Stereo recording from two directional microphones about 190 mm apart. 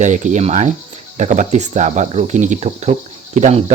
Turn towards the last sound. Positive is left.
turn(degrees=-35)  # may be behind; listen again after turning